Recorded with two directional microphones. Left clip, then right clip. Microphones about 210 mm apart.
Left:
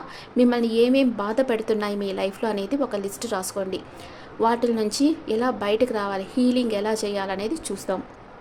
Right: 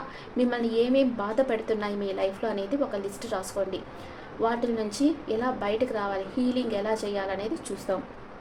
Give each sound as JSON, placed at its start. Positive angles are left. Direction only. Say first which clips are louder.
{"t": 0.3, "sound": "a woman's voice", "louder": "left 6 dB", "side_deg": 50}